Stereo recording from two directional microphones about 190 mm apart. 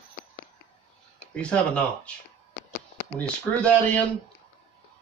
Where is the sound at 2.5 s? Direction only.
50° left (ahead or behind).